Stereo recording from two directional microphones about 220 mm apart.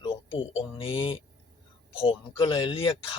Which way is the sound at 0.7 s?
25° left (ahead or behind).